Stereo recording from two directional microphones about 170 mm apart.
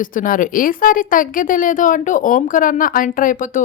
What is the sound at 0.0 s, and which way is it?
A woman's voice, 50° left (ahead or behind).